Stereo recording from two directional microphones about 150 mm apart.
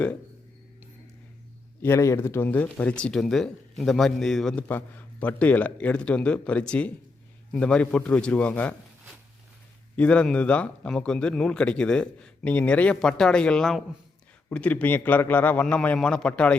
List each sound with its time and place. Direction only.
1.8 s speech: 20° left (ahead or behind)
9.9 s speech: 10° left (ahead or behind)